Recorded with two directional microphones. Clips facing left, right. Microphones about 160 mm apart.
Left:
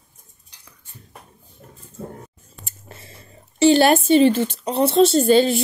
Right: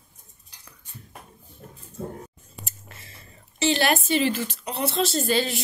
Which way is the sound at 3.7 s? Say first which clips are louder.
Left 7 dB; 30° left (ahead or behind).